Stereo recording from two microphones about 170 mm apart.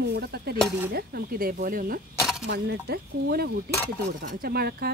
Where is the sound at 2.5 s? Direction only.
70° right (ahead or behind).